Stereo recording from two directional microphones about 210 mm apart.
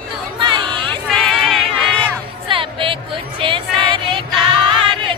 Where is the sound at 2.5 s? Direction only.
25° right (ahead or behind).